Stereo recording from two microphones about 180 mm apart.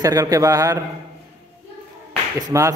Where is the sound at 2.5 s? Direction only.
20° right (ahead or behind).